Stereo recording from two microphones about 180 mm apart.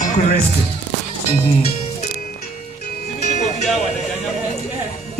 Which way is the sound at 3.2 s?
40° left (ahead or behind).